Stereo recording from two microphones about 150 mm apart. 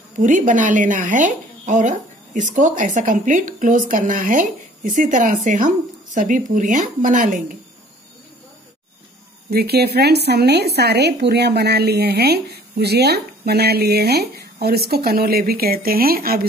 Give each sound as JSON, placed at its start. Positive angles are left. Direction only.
{"t": 0.2, "sound": "speech", "side_deg": -60}
{"t": 9.5, "sound": "a woman's voice", "side_deg": -90}